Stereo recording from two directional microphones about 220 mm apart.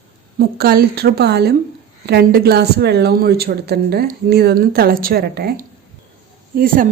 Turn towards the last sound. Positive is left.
turn(degrees=-40)  # may be behind; listen again after turning